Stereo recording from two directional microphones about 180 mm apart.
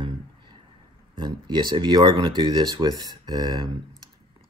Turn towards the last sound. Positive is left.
turn(degrees=-20)  # may be behind; listen again after turning